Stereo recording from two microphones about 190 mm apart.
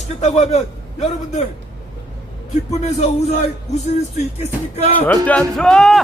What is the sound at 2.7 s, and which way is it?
Speech, 35° left (ahead or behind).